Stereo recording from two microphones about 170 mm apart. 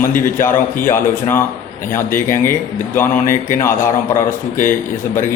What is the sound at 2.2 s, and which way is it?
Speech, 15° left (ahead or behind).